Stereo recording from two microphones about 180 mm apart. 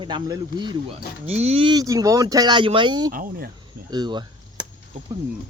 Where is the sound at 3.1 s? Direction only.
50° right (ahead or behind).